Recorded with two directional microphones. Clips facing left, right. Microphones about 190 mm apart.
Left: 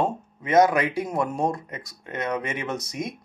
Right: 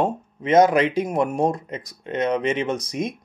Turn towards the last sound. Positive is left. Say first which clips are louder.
# right 5 dB
turn(degrees=-20)  # may be behind; listen again after turning